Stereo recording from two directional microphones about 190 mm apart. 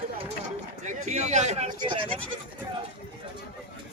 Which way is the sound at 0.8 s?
40° right (ahead or behind).